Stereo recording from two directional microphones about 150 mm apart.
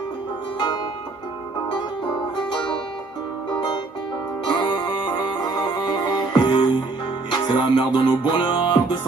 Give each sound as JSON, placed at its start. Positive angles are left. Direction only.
{"t": 4.6, "sound": "music", "side_deg": 30}